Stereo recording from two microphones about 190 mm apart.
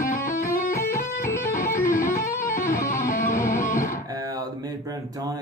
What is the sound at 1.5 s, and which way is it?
Music, 45° left (ahead or behind).